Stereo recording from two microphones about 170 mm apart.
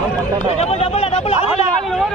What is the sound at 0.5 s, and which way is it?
Speech, 40° left (ahead or behind).